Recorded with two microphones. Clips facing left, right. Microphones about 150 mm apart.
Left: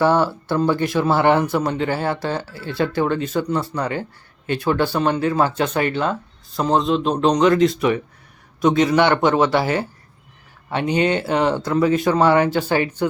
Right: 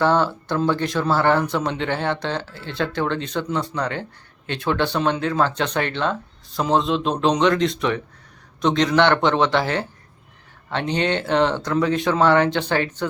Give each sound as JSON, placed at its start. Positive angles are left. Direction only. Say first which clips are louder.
{"t": 0.0, "sound": "speech", "louder": "left 2 dB", "side_deg": 10}
{"t": 1.5, "sound": "speech", "louder": "left 3 dB", "side_deg": 5}